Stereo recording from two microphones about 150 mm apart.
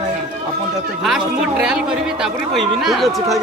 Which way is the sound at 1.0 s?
5° right (ahead or behind).